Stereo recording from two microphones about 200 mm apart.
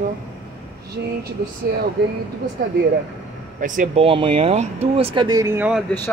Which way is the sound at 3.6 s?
40° right (ahead or behind).